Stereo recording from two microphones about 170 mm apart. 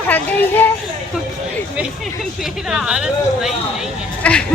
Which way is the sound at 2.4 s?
5° right (ahead or behind).